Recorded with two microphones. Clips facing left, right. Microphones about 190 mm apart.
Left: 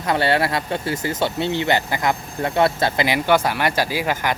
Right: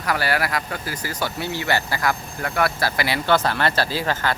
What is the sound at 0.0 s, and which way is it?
Speech, 25° left (ahead or behind).